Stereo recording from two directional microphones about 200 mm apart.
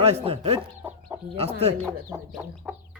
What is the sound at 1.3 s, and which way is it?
Speech, 30° right (ahead or behind).